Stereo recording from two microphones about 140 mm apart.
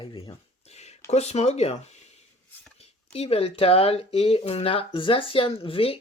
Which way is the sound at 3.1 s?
45° left (ahead or behind).